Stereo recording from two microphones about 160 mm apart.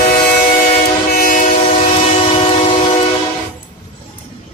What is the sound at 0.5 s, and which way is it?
Train, 60° left (ahead or behind).